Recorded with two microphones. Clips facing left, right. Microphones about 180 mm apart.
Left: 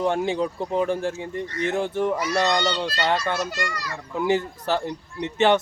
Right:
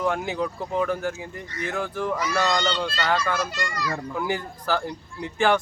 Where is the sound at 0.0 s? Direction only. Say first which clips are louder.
Left 3 dB; 30° left (ahead or behind).